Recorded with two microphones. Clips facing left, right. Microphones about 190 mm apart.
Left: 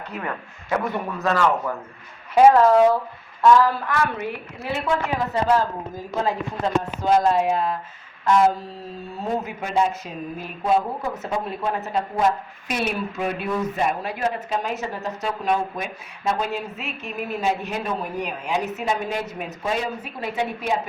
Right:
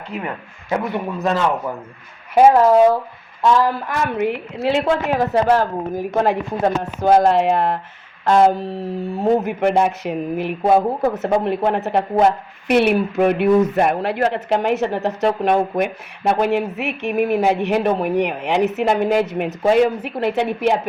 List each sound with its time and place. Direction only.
0.1 s speech: 15° right (ahead or behind)
4.2 s a woman's voice: 70° right (ahead or behind)
4.9 s speech: 20° right (ahead or behind)
5.2 s a woman's voice: 70° right (ahead or behind)
6.1 s a woman's voice: 60° right (ahead or behind)